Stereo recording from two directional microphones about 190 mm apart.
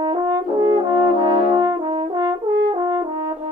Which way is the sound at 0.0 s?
25° right (ahead or behind).